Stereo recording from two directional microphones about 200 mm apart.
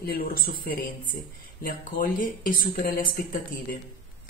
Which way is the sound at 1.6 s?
45° left (ahead or behind).